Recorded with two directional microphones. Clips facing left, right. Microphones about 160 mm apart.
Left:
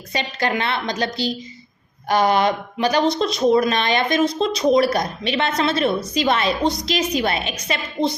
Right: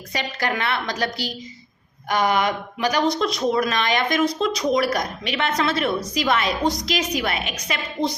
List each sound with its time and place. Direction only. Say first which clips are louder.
0.1 s speech: left 3 dB; 25° left (ahead or behind)